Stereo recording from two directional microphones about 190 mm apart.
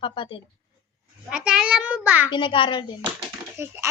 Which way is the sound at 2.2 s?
25° left (ahead or behind).